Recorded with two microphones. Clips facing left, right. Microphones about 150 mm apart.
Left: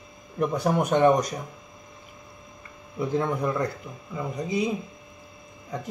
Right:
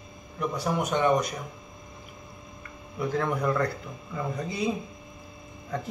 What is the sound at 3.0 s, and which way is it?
A man's voice, 20° left (ahead or behind).